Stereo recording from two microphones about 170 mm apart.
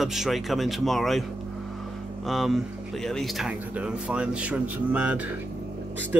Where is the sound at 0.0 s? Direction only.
Centre (ahead or behind).